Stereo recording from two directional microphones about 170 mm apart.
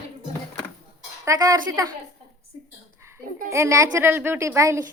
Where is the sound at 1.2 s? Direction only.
20° right (ahead or behind).